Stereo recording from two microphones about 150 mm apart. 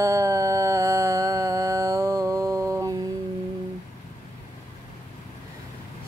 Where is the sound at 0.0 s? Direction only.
20° right (ahead or behind).